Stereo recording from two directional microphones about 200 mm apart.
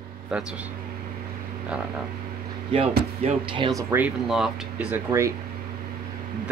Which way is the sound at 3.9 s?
5° right (ahead or behind).